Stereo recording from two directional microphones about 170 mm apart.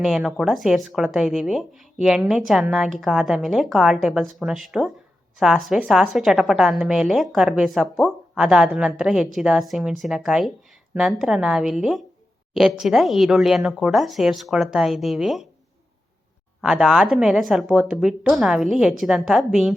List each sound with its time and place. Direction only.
0.0 s speech: centre (ahead or behind)
16.6 s speech: 5° right (ahead or behind)